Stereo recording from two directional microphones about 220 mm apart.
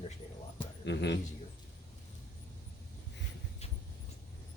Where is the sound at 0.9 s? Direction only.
50° left (ahead or behind).